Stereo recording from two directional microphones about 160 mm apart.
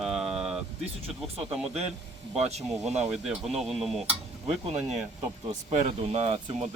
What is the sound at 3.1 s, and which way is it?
Speech, centre (ahead or behind).